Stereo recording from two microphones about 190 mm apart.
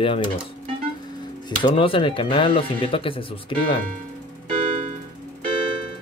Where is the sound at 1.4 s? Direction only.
25° left (ahead or behind).